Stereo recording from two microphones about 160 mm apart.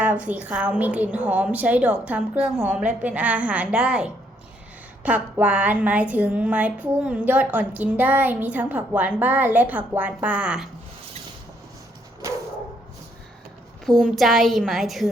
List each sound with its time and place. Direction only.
0.0 s a woman's voice: 10° right (ahead or behind)
12.2 s a sound: 20° right (ahead or behind)
13.8 s a woman's voice: centre (ahead or behind)